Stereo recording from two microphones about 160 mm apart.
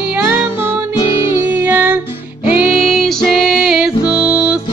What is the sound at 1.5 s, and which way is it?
Music, 10° right (ahead or behind).